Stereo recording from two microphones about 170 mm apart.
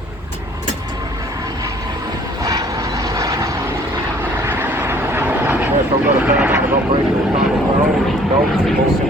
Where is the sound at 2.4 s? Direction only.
20° right (ahead or behind).